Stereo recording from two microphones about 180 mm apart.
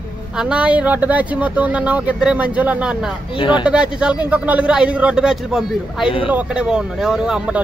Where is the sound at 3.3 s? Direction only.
25° left (ahead or behind).